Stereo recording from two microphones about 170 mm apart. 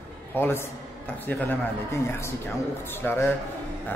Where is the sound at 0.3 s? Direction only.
15° left (ahead or behind).